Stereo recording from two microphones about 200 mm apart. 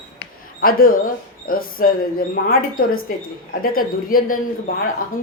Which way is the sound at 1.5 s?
45° left (ahead or behind).